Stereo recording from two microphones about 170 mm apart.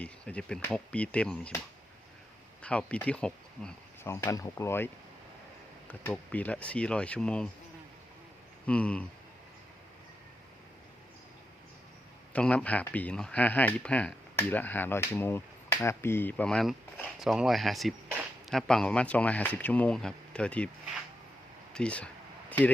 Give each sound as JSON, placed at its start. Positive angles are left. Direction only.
{"t": 0.0, "sound": "speech", "side_deg": 5}
{"t": 4.1, "sound": "speech", "side_deg": 15}
{"t": 5.9, "sound": "speech", "side_deg": 10}
{"t": 8.6, "sound": "speech", "side_deg": 5}
{"t": 12.3, "sound": "speech", "side_deg": 5}
{"t": 21.7, "sound": "a sound", "side_deg": 5}